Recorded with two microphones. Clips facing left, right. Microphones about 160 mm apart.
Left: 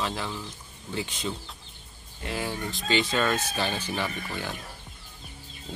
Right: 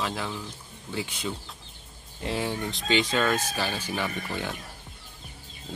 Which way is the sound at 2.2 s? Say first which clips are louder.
Right 2 dB; 25° right (ahead or behind).